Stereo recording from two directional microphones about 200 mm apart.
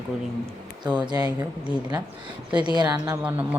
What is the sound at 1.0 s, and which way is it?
Speech, 20° right (ahead or behind).